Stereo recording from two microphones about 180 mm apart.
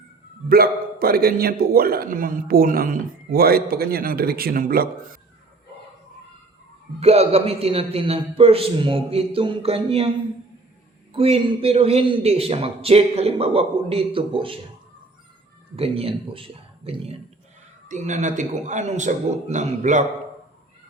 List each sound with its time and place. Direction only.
0.4 s a man's voice: 55° right (ahead or behind)
7.0 s a man's voice: 35° right (ahead or behind)
11.1 s a man's voice: 30° right (ahead or behind)
15.7 s a man's voice: 35° right (ahead or behind)